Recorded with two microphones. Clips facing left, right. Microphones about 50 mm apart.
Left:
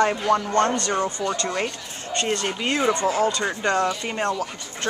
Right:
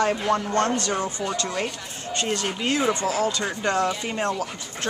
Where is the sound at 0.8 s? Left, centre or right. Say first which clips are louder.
Left 2 dB; centre.